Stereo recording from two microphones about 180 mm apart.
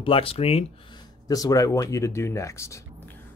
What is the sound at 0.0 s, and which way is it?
Speech, 30° left (ahead or behind).